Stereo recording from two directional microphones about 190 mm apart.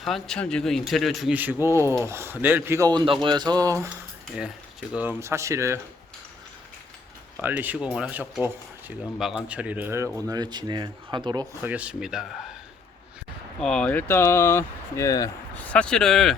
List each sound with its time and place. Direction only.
0.0 s a man's voice: centre (ahead or behind); by 3.8 s 20° right (ahead or behind)
4.9 s a man's voice: 10° right (ahead or behind)
7.4 s a man's voice: 10° right (ahead or behind)
11.6 s speech: 5° right (ahead or behind)
13.6 s speech: 5° left (ahead or behind)
15.7 s speech: 5° left (ahead or behind)